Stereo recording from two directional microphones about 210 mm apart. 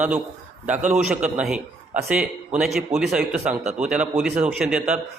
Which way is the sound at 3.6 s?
30° right (ahead or behind).